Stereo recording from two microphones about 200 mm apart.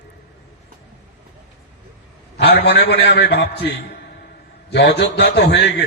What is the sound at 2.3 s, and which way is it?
A man's voice, 55° left (ahead or behind).